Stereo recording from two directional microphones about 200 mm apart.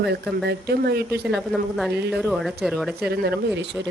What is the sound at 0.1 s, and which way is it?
Speech, 55° right (ahead or behind).